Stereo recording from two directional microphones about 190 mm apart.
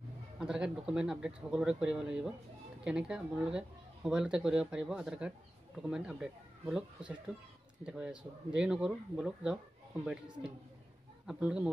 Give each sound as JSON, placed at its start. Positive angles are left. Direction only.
{"t": 0.4, "sound": "speech", "side_deg": -5}